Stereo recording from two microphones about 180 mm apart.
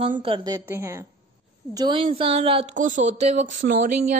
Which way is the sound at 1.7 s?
25° right (ahead or behind).